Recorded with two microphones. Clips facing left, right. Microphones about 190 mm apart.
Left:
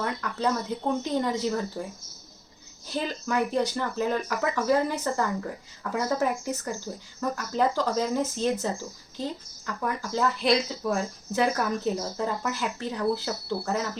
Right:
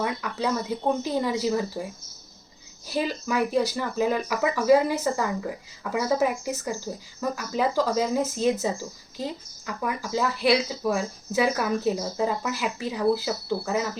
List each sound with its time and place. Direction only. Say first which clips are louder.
0.0 s speech: right 1 dB; 10° right (ahead or behind)
2.8 s speech: right 3 dB; 10° right (ahead or behind)